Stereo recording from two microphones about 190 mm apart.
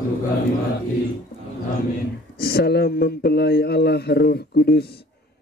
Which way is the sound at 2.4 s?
55° left (ahead or behind).